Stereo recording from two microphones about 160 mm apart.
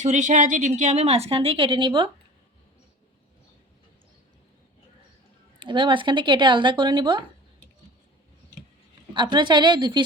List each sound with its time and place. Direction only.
0.0 s a woman's voice: 50° right (ahead or behind); by 2.0 s 30° right (ahead or behind)
5.5 s speech: 30° right (ahead or behind)
9.1 s speech: 30° right (ahead or behind)